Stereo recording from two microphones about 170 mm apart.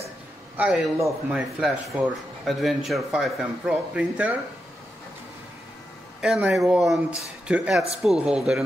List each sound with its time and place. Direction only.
0.6 s speech: 5° right (ahead or behind)
6.2 s speech: centre (ahead or behind)